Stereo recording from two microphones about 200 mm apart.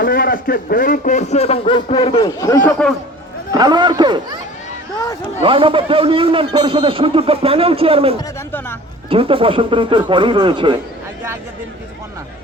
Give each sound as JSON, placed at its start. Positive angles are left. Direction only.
{"t": 0.0, "sound": "a man's voice", "side_deg": 45}
{"t": 2.2, "sound": "a man's voice", "side_deg": 15}
{"t": 3.5, "sound": "a man's voice", "side_deg": -20}
{"t": 5.4, "sound": "a man's voice", "side_deg": -25}